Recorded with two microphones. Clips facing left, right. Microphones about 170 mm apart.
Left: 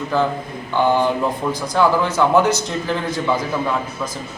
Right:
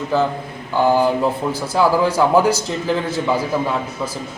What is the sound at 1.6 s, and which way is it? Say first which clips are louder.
A man's voice: right 1 dB; 5° right (ahead or behind).